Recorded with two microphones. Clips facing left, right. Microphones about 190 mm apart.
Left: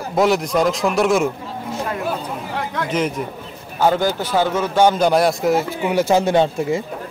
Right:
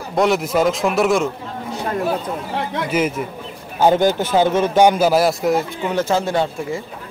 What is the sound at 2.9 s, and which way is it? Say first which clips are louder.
Speech: right 2 dB; 5° right (ahead or behind).